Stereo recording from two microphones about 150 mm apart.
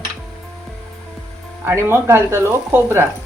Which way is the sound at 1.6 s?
15° right (ahead or behind).